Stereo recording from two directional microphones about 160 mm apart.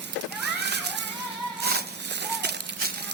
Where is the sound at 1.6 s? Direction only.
90° right.